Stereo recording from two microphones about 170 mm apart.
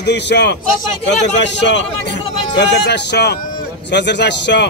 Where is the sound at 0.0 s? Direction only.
85° left.